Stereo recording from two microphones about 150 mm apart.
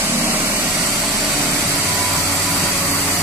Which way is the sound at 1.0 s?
Centre (ahead or behind).